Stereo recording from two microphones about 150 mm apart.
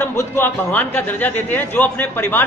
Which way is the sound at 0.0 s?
15° left (ahead or behind).